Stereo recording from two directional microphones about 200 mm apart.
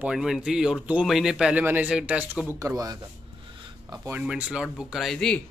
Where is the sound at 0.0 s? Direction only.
5° right (ahead or behind).